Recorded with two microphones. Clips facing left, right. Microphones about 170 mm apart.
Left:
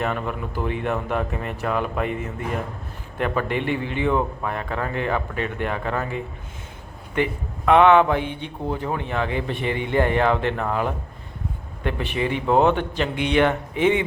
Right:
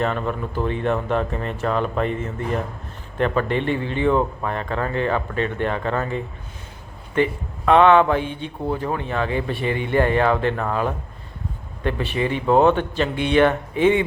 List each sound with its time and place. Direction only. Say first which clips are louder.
0.0 s speech: right 3 dB; 10° left (ahead or behind)